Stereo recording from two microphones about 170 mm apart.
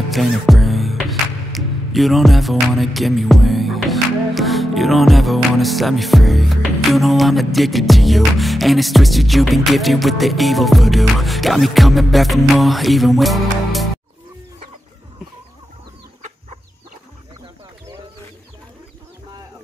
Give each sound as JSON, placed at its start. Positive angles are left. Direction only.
{"t": 0.1, "sound": "music", "side_deg": 0}
{"t": 16.2, "sound": "chicken", "side_deg": -45}